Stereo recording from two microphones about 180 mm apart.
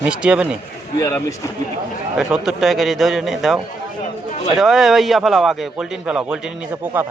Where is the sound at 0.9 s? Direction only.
15° left (ahead or behind).